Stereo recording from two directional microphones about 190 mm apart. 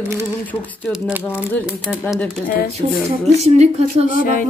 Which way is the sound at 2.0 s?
5° left (ahead or behind).